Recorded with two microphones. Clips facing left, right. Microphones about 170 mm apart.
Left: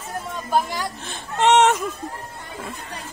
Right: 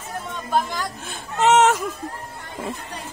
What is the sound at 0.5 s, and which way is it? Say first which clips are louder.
Speech: left 1 dB; 5° left (ahead or behind).